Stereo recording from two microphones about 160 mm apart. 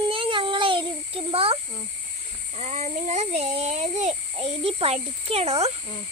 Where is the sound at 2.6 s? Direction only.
45° right (ahead or behind).